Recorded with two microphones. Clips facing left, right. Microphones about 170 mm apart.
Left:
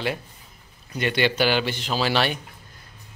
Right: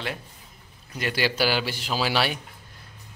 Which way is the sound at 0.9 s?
5° right (ahead or behind).